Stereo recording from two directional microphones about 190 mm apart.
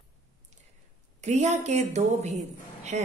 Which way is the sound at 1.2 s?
35° right (ahead or behind).